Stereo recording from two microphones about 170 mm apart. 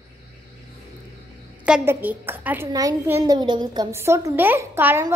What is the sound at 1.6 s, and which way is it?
A woman's voice, 10° right (ahead or behind).